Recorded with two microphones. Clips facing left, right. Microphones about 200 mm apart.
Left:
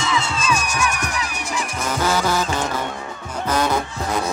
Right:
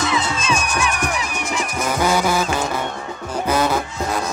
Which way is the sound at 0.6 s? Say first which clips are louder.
Right 1 dB; 45° left (ahead or behind).